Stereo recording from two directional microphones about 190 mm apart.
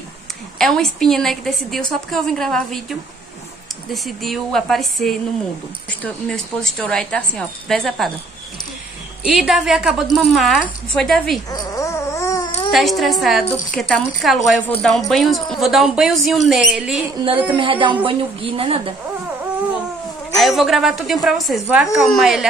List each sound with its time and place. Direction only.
0.6 s speech: centre (ahead or behind)
9.2 s speech: 5° right (ahead or behind)
11.5 s dog: 15° left (ahead or behind)
12.7 s speech: centre (ahead or behind)
17.5 s a woman's voice: 25° right (ahead or behind)
20.3 s speech: centre (ahead or behind)